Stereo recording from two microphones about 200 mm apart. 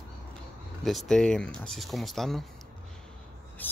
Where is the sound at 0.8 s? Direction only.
Centre (ahead or behind).